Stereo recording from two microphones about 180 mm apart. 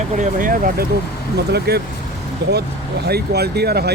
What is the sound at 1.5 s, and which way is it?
Speech, 60° right (ahead or behind).